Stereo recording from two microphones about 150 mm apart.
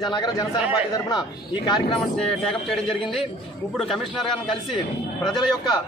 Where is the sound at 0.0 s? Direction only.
30° left (ahead or behind).